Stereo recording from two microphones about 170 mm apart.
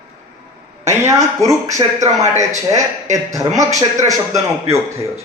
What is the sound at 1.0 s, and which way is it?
Speech, 20° right (ahead or behind).